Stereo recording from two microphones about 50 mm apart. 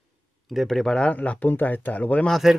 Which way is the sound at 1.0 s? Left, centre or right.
Left.